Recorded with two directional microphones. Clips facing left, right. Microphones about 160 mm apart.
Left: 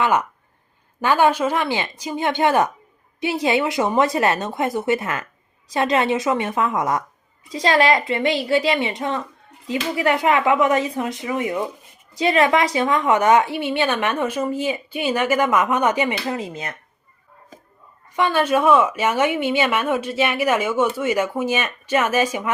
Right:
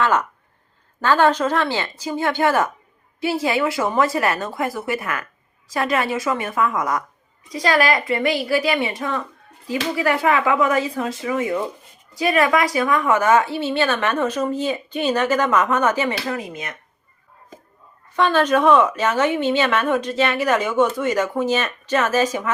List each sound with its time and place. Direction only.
0.0 s speech: 10° left (ahead or behind); by 16.7 s 30° left (ahead or behind)
18.2 s speech: 10° left (ahead or behind)